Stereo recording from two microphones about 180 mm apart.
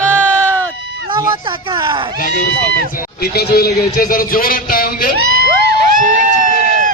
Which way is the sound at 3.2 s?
60° left (ahead or behind).